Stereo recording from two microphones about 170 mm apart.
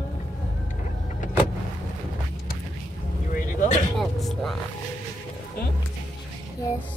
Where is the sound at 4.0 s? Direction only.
Centre (ahead or behind).